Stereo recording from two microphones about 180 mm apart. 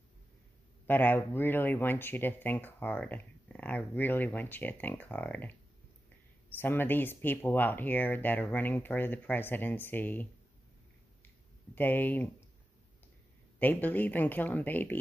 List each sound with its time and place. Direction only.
0.8 s speech: 10° left (ahead or behind)
11.2 s a sound: 10° left (ahead or behind)
13.6 s speech: 10° left (ahead or behind)